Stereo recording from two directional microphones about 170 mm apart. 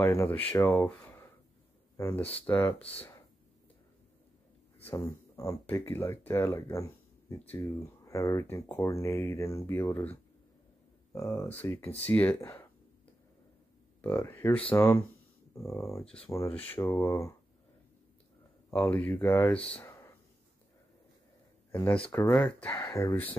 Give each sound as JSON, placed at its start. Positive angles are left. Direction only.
{"t": 0.0, "sound": "speech", "side_deg": 15}
{"t": 0.8, "sound": "a sound", "side_deg": 15}
{"t": 2.0, "sound": "speech", "side_deg": 10}
{"t": 4.8, "sound": "speech", "side_deg": 15}
{"t": 11.1, "sound": "speech", "side_deg": 15}
{"t": 14.0, "sound": "speech", "side_deg": 15}
{"t": 16.0, "sound": "speech", "side_deg": 5}
{"t": 16.3, "sound": "speech", "side_deg": 15}
{"t": 18.7, "sound": "speech", "side_deg": 10}
{"t": 19.7, "sound": "a sound", "side_deg": 15}
{"t": 21.7, "sound": "speech", "side_deg": 10}
{"t": 22.7, "sound": "speech", "side_deg": 15}